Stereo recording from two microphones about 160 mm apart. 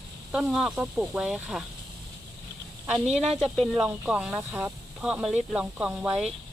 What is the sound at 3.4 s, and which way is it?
Speech, centre (ahead or behind).